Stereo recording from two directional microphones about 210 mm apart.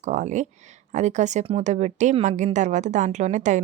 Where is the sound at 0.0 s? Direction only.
35° right (ahead or behind).